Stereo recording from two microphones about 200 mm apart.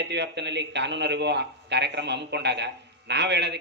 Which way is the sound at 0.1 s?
60° right (ahead or behind).